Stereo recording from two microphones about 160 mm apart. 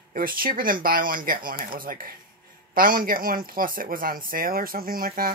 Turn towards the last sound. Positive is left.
turn(degrees=-65)  # may be behind; listen again after turning